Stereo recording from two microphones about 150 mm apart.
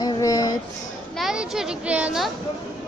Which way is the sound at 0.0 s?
25° left (ahead or behind).